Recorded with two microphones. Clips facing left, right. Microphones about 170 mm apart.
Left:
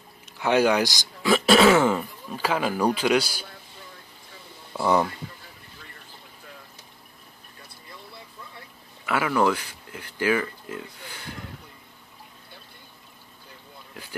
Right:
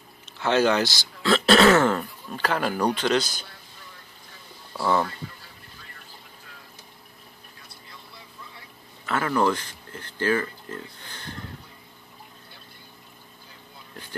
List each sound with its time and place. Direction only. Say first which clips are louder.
0.4 s speech: left 1 dB; 10° left (ahead or behind)
4.7 s speech: left 2 dB; 15° left (ahead or behind)
9.0 s speech: left 1 dB; 10° left (ahead or behind)